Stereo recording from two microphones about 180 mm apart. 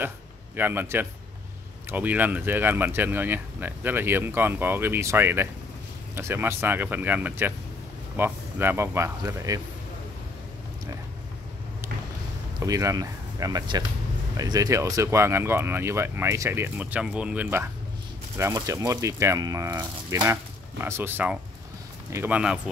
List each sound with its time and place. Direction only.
0.6 s speech: 10° right (ahead or behind)
12.5 s speech: 20° right (ahead or behind)